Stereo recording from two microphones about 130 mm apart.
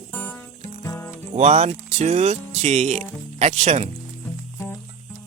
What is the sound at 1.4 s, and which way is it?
Speech, 60° right (ahead or behind).